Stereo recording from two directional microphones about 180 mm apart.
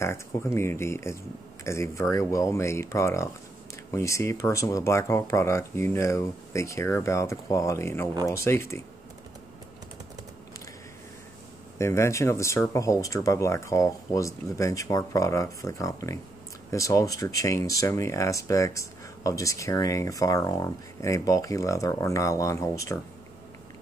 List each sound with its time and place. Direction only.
0.0 s speech: 15° left (ahead or behind)
11.8 s speech: 15° left (ahead or behind)